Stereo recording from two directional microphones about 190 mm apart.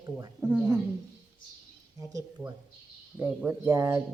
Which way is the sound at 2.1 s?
20° right (ahead or behind).